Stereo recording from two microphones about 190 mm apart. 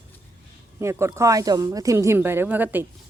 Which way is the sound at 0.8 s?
15° right (ahead or behind).